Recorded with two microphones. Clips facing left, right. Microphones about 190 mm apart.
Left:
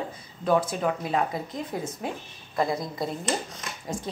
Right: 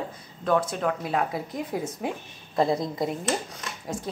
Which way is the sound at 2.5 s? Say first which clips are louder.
Right 3 dB; 25° right (ahead or behind).